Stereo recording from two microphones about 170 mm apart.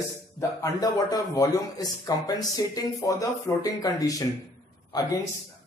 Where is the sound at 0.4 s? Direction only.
20° left (ahead or behind).